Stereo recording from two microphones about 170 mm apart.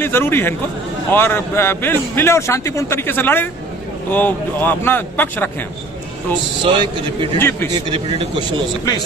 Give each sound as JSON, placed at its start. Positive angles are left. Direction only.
{"t": 0.0, "sound": "a man's voice", "side_deg": 15}
{"t": 6.6, "sound": "a man's voice", "side_deg": -30}
{"t": 7.3, "sound": "a man's voice", "side_deg": 15}
{"t": 7.9, "sound": "a man's voice", "side_deg": -30}